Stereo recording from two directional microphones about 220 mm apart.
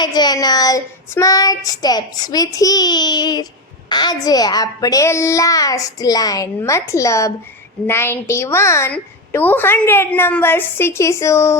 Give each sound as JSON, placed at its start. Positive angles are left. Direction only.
{"t": 0.0, "sound": "a woman's voice", "side_deg": 20}